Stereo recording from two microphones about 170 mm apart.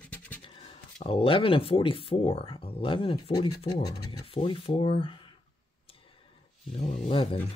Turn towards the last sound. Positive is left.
turn(degrees=30)  # may be behind; listen again after turning